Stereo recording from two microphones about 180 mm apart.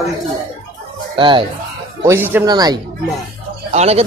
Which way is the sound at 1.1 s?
30° right (ahead or behind).